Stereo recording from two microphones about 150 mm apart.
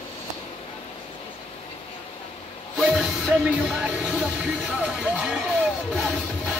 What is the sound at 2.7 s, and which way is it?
Music, 5° right (ahead or behind).